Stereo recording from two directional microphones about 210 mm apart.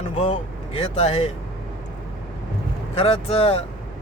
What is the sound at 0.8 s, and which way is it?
Speech, 30° left (ahead or behind).